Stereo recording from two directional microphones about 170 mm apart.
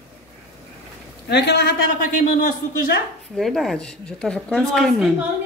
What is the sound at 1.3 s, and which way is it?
Speech, 75° left (ahead or behind).